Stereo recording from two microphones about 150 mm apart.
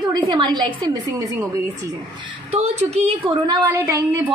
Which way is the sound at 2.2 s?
45° right (ahead or behind).